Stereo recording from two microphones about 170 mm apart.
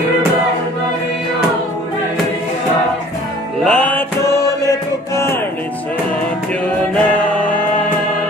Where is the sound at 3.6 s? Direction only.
5° left (ahead or behind).